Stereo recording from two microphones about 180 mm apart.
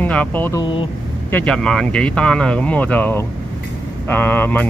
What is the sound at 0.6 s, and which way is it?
Speech, 30° left (ahead or behind).